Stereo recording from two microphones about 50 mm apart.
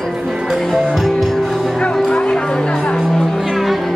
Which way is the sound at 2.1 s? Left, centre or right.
Centre.